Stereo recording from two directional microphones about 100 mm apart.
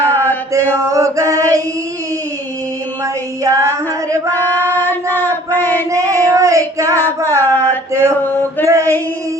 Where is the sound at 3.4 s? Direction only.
35° right (ahead or behind).